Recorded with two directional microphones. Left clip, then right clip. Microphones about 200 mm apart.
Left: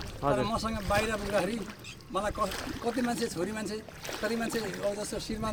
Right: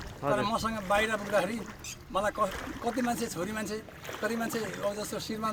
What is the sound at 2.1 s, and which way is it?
Speech, centre (ahead or behind).